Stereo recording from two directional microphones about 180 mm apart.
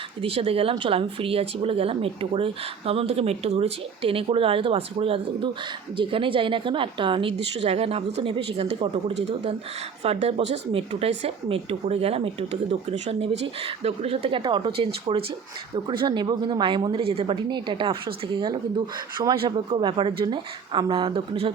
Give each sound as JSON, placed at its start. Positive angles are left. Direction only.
{"t": 0.2, "sound": "speech", "side_deg": -30}
{"t": 10.0, "sound": "speech", "side_deg": -35}